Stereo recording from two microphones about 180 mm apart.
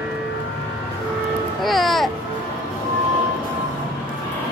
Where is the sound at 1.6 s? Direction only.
Centre (ahead or behind).